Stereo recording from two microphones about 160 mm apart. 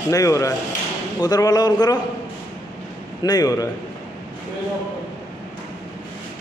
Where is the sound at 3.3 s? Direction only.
25° left (ahead or behind).